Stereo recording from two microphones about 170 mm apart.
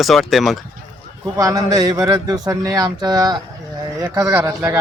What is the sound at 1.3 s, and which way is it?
A man's voice, 20° right (ahead or behind).